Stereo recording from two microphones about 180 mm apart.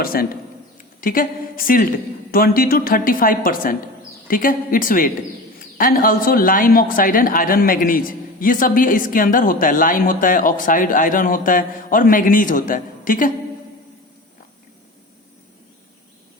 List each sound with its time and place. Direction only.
0.0 s a man's voice: 55° left (ahead or behind)